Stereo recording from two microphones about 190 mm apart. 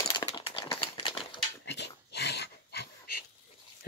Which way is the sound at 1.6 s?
65° left (ahead or behind).